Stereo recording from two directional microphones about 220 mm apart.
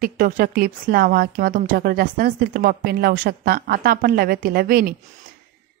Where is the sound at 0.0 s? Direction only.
40° right (ahead or behind).